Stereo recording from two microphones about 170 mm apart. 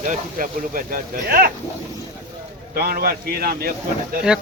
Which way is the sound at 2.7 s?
60° right (ahead or behind).